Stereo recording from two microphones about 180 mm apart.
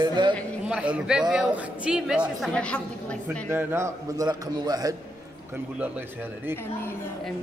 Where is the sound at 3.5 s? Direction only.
15° right (ahead or behind).